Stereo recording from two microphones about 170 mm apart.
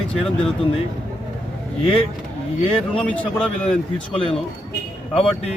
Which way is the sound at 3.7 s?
35° left (ahead or behind).